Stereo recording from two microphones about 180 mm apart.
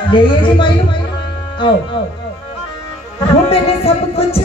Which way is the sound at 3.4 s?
35° left (ahead or behind).